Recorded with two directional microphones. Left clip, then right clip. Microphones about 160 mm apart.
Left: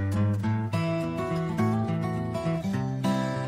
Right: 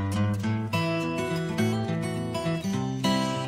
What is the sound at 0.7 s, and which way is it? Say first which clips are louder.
Music: right 3 dB; 50° right (ahead or behind).